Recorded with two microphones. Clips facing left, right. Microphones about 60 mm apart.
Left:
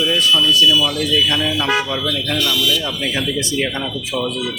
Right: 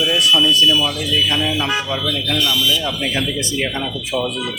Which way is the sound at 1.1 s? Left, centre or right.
Centre.